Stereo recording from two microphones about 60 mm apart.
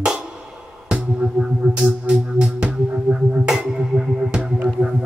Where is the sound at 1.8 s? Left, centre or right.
Centre.